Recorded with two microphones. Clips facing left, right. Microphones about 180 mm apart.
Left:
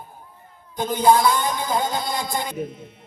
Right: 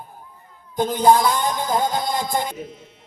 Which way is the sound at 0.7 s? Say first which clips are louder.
Right 1 dB; 45° right (ahead or behind).